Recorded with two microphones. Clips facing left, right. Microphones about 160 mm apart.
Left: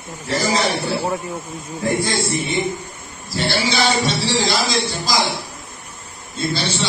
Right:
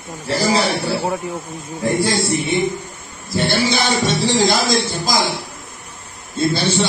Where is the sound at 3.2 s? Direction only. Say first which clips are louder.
Right 3 dB; 50° right (ahead or behind).